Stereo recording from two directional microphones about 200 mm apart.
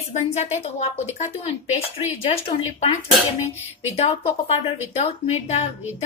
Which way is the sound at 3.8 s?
30° left (ahead or behind).